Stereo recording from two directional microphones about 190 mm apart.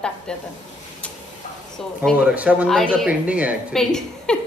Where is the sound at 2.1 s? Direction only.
5° right (ahead or behind).